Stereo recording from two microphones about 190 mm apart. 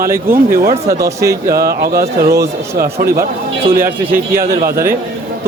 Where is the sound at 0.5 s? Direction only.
50° right (ahead or behind).